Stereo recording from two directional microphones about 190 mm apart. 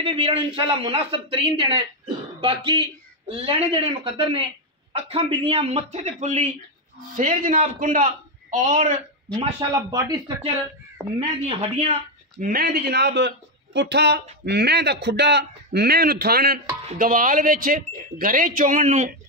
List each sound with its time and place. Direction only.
0.0 s a man's voice: 30° right (ahead or behind)
9.6 s a man's voice: 20° right (ahead or behind)
11.1 s speech: 30° right (ahead or behind)
12.4 s speech: 55° right (ahead or behind)